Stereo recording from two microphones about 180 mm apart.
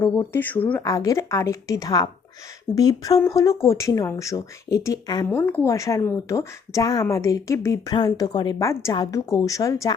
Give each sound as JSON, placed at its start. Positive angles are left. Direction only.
{"t": 0.0, "sound": "speech", "side_deg": 10}